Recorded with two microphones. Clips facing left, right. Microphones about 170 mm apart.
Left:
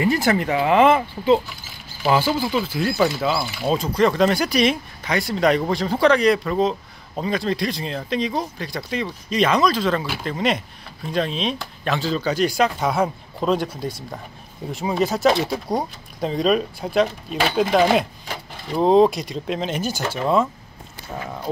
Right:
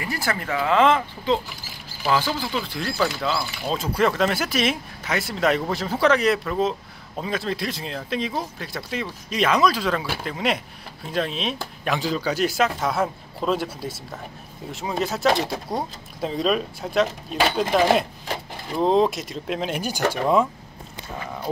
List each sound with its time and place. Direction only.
0.0 s speech: 20° left (ahead or behind); by 20.4 s 15° right (ahead or behind)